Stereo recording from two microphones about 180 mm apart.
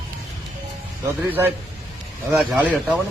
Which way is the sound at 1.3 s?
10° right (ahead or behind).